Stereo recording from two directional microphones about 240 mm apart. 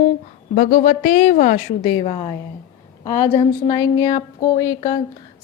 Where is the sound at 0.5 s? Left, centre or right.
Left.